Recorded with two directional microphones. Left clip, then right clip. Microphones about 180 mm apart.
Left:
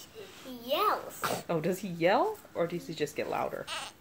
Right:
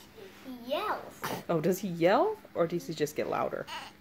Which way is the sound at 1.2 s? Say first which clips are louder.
Left 3 dB; 10° left (ahead or behind).